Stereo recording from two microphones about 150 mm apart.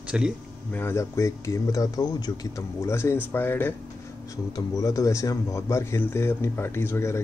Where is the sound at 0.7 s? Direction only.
15° left (ahead or behind).